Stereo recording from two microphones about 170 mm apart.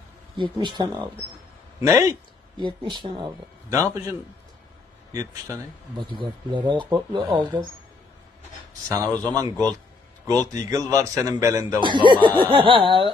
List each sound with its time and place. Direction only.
0.4 s a man's voice: 30° right (ahead or behind)
3.7 s a man's voice: 15° right (ahead or behind)
8.9 s speech: 10° left (ahead or behind)
9.3 s speech: 20° right (ahead or behind)
12.4 s snicker: 30° right (ahead or behind)